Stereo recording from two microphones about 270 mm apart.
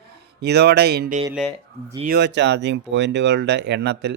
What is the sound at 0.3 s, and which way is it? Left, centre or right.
Speech, right.